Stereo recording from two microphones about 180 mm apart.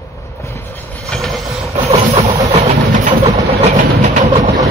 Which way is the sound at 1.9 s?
35° right (ahead or behind).